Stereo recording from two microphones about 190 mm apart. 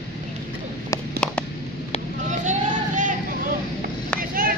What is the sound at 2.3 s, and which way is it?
Vehicle, 40° right (ahead or behind).